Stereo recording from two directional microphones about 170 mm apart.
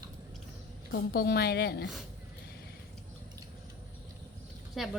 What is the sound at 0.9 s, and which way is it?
A woman's voice, 65° left (ahead or behind).